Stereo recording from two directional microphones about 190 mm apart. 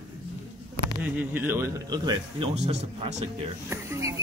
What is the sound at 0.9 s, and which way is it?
Speech, 10° right (ahead or behind).